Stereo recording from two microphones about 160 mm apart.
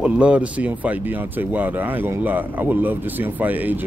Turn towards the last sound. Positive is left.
turn(degrees=-10)  # may be behind; listen again after turning